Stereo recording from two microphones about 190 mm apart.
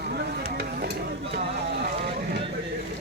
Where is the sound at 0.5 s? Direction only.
60° right (ahead or behind).